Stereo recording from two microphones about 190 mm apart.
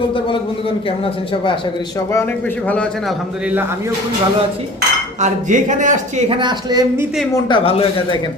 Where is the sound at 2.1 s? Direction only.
10° left (ahead or behind); by 3.9 s 10° right (ahead or behind).